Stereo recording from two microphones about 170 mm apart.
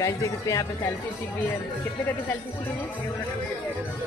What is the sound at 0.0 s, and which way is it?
Speech, 20° left (ahead or behind).